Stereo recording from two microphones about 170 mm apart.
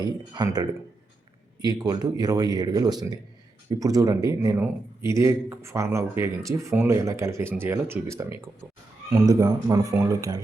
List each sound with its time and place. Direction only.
0.0 s speech: 25° right (ahead or behind)